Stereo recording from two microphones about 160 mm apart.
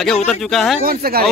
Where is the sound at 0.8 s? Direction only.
70° right (ahead or behind).